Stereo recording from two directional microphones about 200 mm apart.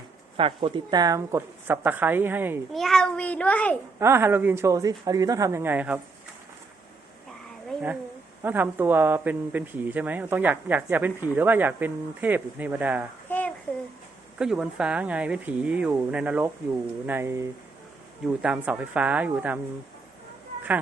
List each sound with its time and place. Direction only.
0.3 s speech: 25° right (ahead or behind); by 2.6 s 10° right (ahead or behind)
2.7 s speech: centre (ahead or behind)
4.0 s speech: 10° right (ahead or behind)
8.4 s speech: 10° right (ahead or behind)
13.2 s a sound: 10° left (ahead or behind)
14.3 s speech: 5° right (ahead or behind)
18.4 s speech: 5° right (ahead or behind)